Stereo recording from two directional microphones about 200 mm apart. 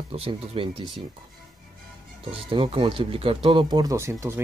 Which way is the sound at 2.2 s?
25° right (ahead or behind).